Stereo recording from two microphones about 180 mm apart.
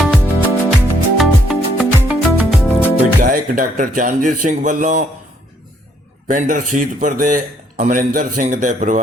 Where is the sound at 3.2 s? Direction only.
50° right (ahead or behind).